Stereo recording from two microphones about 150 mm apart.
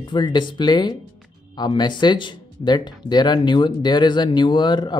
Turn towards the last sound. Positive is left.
turn(degrees=30)  # may be behind; listen again after turning